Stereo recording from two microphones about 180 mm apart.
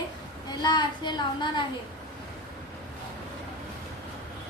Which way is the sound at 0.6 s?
25° left (ahead or behind).